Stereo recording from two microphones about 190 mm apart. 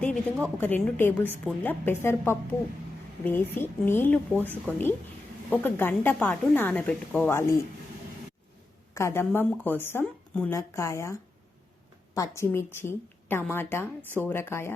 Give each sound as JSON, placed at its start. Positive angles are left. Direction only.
{"t": 0.0, "sound": "a woman's voice", "side_deg": 5}
{"t": 9.0, "sound": "a woman's voice", "side_deg": 15}